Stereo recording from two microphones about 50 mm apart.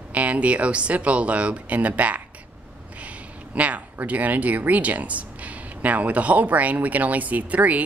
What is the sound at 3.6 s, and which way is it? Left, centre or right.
Speech, right.